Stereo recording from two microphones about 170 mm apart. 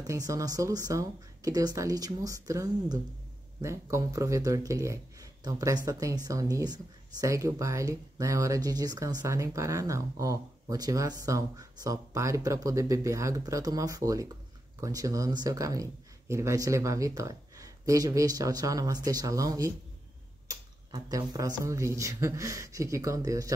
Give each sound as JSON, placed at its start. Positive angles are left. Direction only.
{"t": 0.0, "sound": "speech", "side_deg": -20}